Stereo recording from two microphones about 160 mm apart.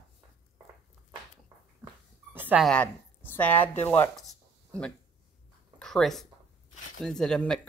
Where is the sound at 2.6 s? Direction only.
10° left (ahead or behind).